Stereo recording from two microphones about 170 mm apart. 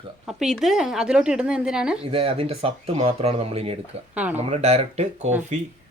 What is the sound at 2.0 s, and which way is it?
Speech, 35° right (ahead or behind).